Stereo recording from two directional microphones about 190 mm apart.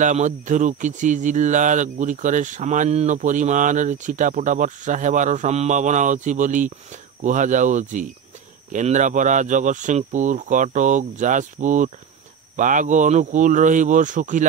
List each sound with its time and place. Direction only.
0.0 s speech: 40° right (ahead or behind)